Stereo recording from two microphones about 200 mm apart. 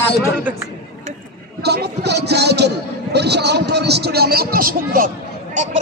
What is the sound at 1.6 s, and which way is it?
A man's voice, 55° right (ahead or behind).